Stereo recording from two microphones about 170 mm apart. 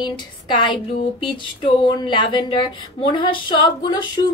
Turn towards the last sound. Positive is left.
turn(degrees=35)  # may be behind; listen again after turning